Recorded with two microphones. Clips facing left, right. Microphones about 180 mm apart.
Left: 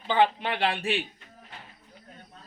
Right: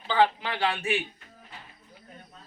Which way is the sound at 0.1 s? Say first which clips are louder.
Even; 25° left (ahead or behind).